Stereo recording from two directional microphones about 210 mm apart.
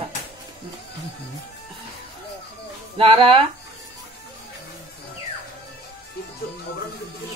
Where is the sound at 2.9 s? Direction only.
25° right (ahead or behind).